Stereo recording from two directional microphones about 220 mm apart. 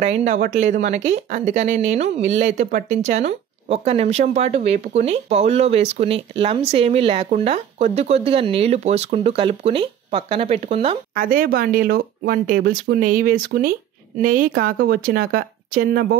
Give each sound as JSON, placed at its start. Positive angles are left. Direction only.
{"t": 0.0, "sound": "speech", "side_deg": -30}
{"t": 11.1, "sound": "speech", "side_deg": -40}